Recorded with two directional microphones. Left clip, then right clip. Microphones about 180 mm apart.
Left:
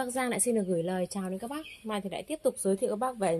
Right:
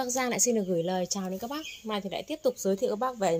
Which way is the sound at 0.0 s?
Centre (ahead or behind).